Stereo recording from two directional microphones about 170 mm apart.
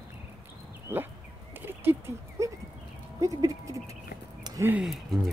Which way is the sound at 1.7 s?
10° right (ahead or behind).